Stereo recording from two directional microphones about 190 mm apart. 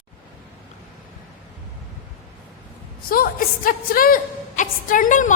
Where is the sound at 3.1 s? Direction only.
50° left (ahead or behind).